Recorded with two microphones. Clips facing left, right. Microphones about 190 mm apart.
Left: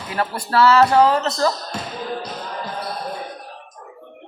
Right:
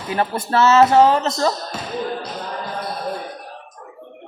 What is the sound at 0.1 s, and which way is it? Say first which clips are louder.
A man's voice: right 2 dB; 20° right (ahead or behind).